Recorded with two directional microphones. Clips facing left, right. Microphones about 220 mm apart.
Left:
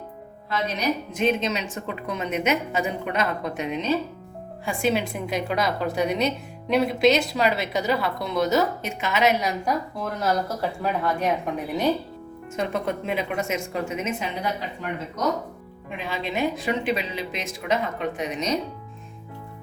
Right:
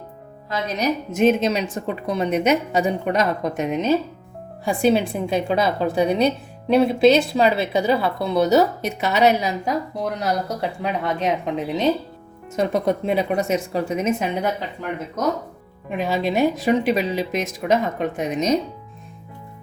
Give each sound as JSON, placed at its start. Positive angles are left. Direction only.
{"t": 0.8, "sound": "a woman's voice", "side_deg": -45}
{"t": 9.6, "sound": "a woman's voice", "side_deg": -15}
{"t": 12.5, "sound": "a woman's voice", "side_deg": -40}
{"t": 15.9, "sound": "a woman's voice", "side_deg": -45}